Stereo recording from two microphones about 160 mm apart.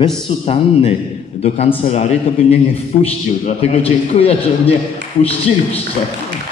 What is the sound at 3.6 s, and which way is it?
A man's voice, 40° left (ahead or behind).